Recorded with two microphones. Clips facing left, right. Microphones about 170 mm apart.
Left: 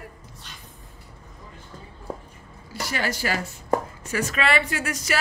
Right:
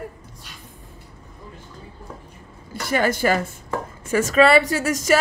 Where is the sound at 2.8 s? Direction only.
50° right (ahead or behind).